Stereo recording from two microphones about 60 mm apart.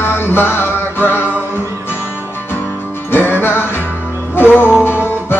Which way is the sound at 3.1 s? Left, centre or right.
Left.